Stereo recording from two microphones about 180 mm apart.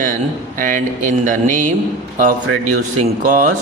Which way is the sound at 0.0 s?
50° right (ahead or behind).